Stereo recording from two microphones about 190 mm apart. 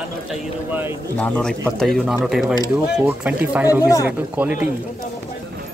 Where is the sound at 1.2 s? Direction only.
5° left (ahead or behind).